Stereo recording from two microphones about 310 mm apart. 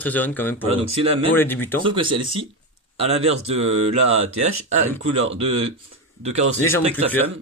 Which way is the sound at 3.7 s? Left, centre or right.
Right.